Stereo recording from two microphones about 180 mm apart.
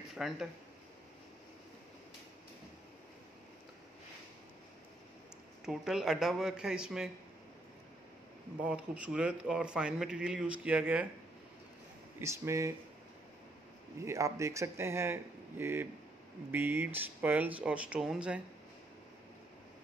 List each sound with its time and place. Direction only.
0.1 s speech: centre (ahead or behind)
5.7 s a man's voice: centre (ahead or behind)
8.6 s a man's voice: 5° right (ahead or behind)
12.2 s speech: 15° right (ahead or behind)
13.9 s speech: 15° right (ahead or behind)